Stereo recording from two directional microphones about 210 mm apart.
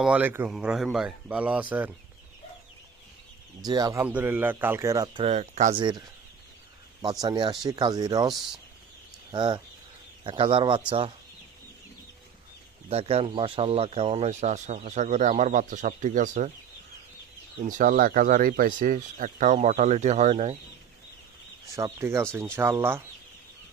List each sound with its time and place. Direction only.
0.0 s speech: 5° right (ahead or behind)
3.6 s speech: 15° right (ahead or behind)
5.2 s speech: 35° right (ahead or behind)
5.7 s speech: 20° right (ahead or behind)
7.0 s speech: 20° right (ahead or behind)
9.3 s speech: 20° right (ahead or behind)
12.9 s speech: 30° right (ahead or behind)
17.6 s speech: 40° right (ahead or behind)
21.7 s speech: 15° right (ahead or behind)